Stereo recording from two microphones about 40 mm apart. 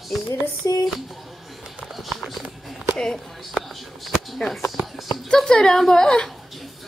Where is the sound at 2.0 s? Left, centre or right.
Centre.